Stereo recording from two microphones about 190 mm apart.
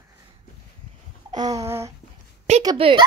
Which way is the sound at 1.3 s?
20° right (ahead or behind).